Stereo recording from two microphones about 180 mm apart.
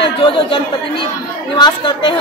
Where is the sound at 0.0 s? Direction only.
30° left (ahead or behind).